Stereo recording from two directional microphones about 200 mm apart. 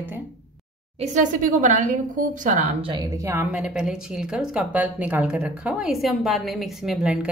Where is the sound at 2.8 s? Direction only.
20° right (ahead or behind).